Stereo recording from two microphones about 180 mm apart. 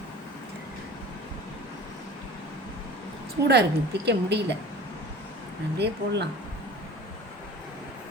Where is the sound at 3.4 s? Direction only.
65° right (ahead or behind).